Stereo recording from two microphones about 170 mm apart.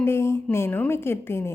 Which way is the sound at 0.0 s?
15° left (ahead or behind).